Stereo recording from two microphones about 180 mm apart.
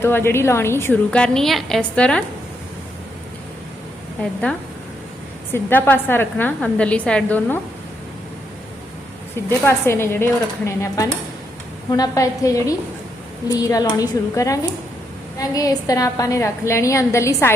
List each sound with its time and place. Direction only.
0.0 s a woman's voice: 15° left (ahead or behind)
4.2 s a woman's voice: 5° left (ahead or behind)
9.5 s a woman's voice: 15° left (ahead or behind)